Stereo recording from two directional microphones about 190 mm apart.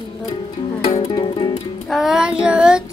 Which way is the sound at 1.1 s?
20° left (ahead or behind).